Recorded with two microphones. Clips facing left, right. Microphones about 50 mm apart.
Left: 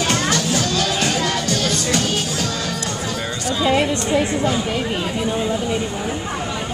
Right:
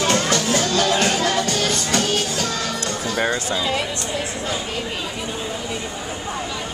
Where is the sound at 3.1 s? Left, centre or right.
Right.